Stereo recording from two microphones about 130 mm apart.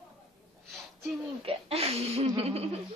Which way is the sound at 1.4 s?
45° right (ahead or behind).